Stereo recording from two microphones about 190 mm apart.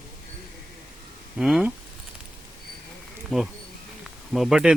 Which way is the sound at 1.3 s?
5° right (ahead or behind).